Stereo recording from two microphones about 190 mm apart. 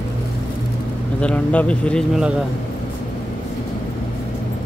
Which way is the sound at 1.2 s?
5° left (ahead or behind).